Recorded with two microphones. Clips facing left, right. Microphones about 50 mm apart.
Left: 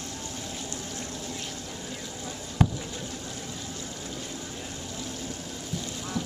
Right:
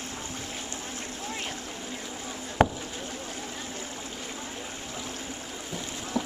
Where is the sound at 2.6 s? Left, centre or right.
Right.